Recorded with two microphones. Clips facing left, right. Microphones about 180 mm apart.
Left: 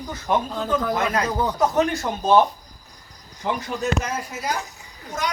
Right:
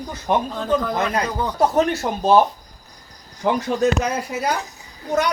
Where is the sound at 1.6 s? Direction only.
30° right (ahead or behind).